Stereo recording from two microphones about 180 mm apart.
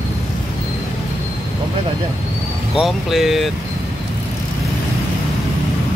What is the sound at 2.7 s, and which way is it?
Speech, centre (ahead or behind).